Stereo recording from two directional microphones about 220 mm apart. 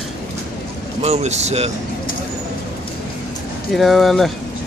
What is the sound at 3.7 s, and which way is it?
Speech, centre (ahead or behind).